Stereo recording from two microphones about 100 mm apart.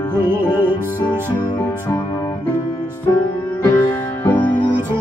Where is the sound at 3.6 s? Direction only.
20° left (ahead or behind).